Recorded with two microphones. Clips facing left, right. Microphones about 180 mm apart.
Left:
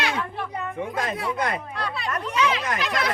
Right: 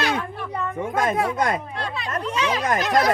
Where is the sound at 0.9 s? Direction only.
50° right (ahead or behind).